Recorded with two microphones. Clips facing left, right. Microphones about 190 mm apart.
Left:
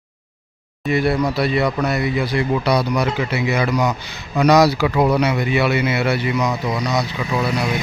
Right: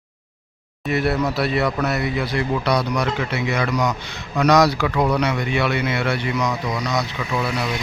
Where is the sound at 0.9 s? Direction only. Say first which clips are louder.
Left 2 dB; centre (ahead or behind).